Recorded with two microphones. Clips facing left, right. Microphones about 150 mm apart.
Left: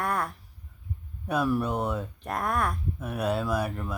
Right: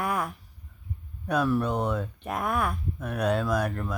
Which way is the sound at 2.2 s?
5° right (ahead or behind).